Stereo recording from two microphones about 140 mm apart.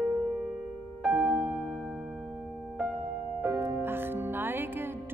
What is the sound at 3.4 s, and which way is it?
Music, 15° right (ahead or behind).